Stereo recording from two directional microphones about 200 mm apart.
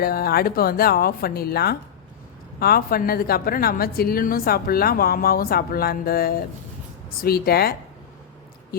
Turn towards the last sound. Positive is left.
turn(degrees=50)  # may be behind; listen again after turning